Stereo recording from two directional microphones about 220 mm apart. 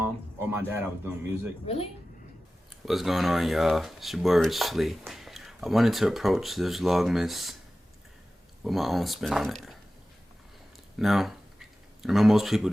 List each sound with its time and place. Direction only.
0.5 s a man's voice: 10° right (ahead or behind)
1.6 s speech: 25° left (ahead or behind)
2.8 s speech: centre (ahead or behind)
8.6 s speech: centre (ahead or behind)
10.9 s speech: centre (ahead or behind)